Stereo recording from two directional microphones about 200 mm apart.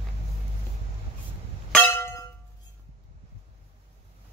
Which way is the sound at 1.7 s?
10° left (ahead or behind).